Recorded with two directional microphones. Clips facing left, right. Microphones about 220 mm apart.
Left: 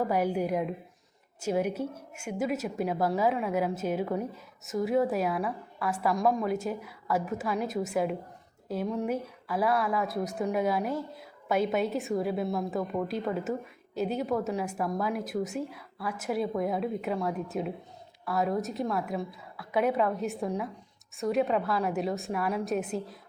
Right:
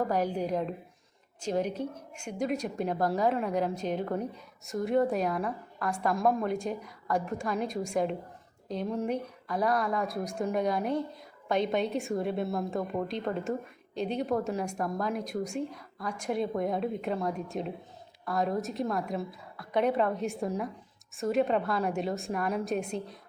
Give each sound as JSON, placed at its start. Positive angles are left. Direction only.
{"t": 0.0, "sound": "a woman's voice", "side_deg": 10}